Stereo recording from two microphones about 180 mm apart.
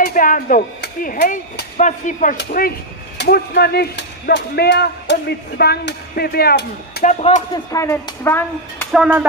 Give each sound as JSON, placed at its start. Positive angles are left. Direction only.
{"t": 0.0, "sound": "speech", "side_deg": 50}
{"t": 1.2, "sound": "speech", "side_deg": 65}
{"t": 1.8, "sound": "speech", "side_deg": 45}
{"t": 2.3, "sound": "speech", "side_deg": 55}
{"t": 7.0, "sound": "speech", "side_deg": 35}
{"t": 7.5, "sound": "speech", "side_deg": 15}
{"t": 8.9, "sound": "speech", "side_deg": -5}